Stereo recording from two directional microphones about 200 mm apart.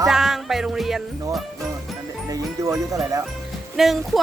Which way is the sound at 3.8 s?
Centre (ahead or behind).